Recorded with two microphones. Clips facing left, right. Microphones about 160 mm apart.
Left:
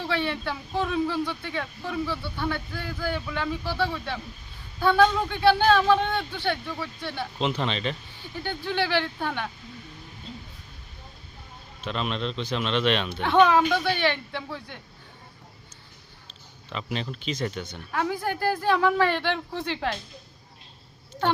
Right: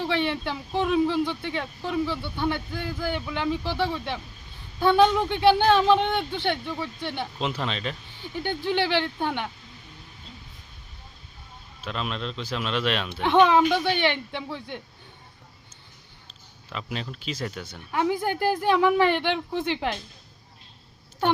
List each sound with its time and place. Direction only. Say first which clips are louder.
0.0 s speech: right 2 dB; 20° right (ahead or behind)
7.3 s speech: left 6 dB; centre (ahead or behind)
8.4 s speech: right 2 dB; 20° right (ahead or behind)
11.8 s speech: left 2 dB; centre (ahead or behind)
13.2 s speech: right 1 dB; 20° right (ahead or behind)
16.7 s speech: left 2 dB; centre (ahead or behind)
17.9 s speech: right 3 dB; 20° right (ahead or behind)